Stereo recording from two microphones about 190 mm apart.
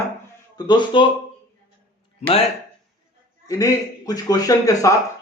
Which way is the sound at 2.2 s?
35° left (ahead or behind).